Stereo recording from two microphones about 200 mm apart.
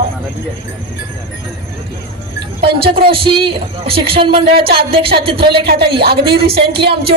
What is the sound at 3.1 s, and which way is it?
Speech, 25° right (ahead or behind).